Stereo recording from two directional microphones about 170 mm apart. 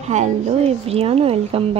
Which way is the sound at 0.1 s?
40° right (ahead or behind).